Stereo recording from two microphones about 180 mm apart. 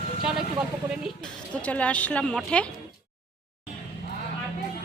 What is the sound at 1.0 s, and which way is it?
Speech, 5° left (ahead or behind).